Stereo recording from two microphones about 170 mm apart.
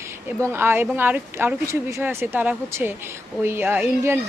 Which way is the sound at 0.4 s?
15° right (ahead or behind).